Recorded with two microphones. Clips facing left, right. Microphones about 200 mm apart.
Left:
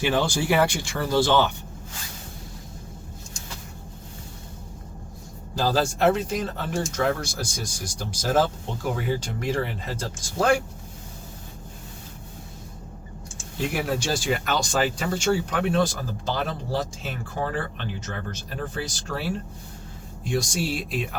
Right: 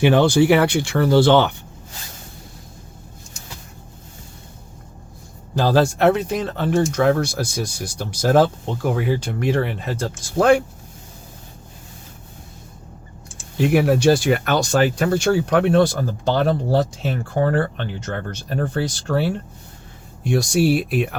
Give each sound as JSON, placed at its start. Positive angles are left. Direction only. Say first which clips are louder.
{"t": 0.0, "sound": "speech", "louder": "right 9 dB", "side_deg": -65}
{"t": 5.5, "sound": "speech", "louder": "right 6 dB", "side_deg": -65}
{"t": 13.7, "sound": "speech", "louder": "right 12 dB", "side_deg": -60}
{"t": 20.2, "sound": "speech", "louder": "right 9 dB", "side_deg": -65}